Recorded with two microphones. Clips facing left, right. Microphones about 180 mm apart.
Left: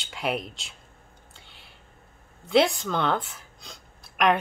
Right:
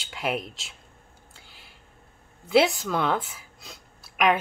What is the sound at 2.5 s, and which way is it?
A woman's voice, centre (ahead or behind).